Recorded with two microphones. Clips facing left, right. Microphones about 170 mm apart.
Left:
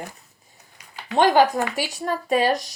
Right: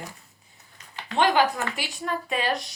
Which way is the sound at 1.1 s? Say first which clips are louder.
Left 5 dB; 40° left (ahead or behind).